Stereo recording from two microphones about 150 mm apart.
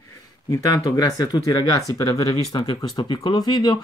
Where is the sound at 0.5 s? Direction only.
20° left (ahead or behind).